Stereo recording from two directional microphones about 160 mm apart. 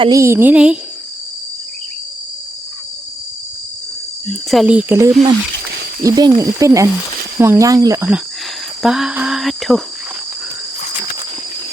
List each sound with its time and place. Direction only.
0.0 s speech: 20° right (ahead or behind)
4.3 s speech: 5° right (ahead or behind); by 8.0 s 20° right (ahead or behind)
8.8 s a sound: 5° right (ahead or behind)